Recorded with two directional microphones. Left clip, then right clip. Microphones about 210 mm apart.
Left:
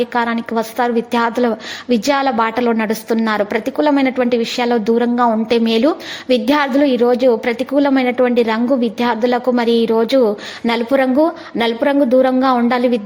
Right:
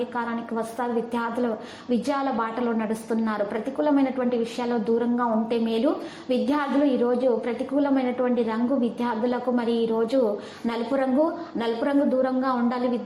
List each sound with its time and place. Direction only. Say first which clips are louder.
0.1 s a woman's voice: left 11 dB; 45° left (ahead or behind)